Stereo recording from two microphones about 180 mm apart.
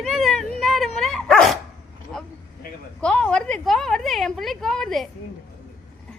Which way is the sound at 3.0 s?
5° left (ahead or behind).